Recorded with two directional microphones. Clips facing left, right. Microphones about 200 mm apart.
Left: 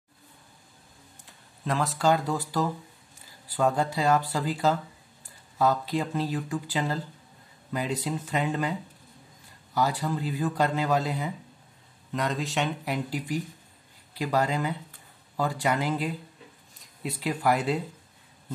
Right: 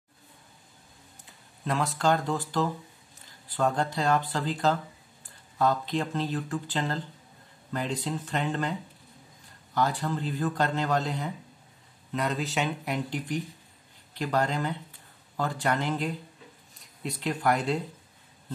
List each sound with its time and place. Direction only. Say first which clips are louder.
1.2 s speech: left 1 dB; centre (ahead or behind)
9.8 s speech: left 1 dB; 10° left (ahead or behind)